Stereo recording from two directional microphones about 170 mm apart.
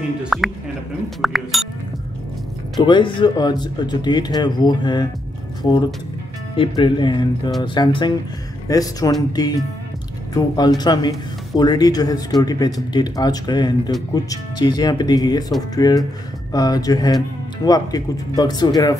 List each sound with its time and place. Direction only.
0.2 s speech: centre (ahead or behind)
2.8 s speech: 30° left (ahead or behind)